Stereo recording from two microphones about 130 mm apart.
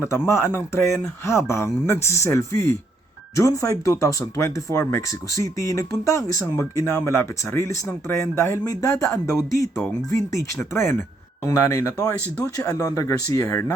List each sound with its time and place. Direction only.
0.3 s speech: 20° left (ahead or behind)